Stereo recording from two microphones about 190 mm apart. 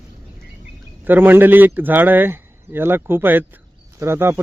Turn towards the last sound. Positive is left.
turn(degrees=-15)  # may be behind; listen again after turning